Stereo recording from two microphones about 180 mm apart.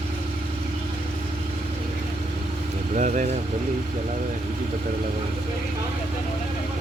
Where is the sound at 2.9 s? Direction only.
45° right (ahead or behind).